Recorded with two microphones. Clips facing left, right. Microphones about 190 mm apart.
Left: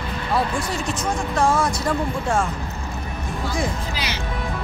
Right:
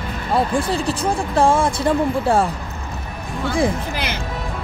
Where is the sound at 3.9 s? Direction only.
55° right (ahead or behind).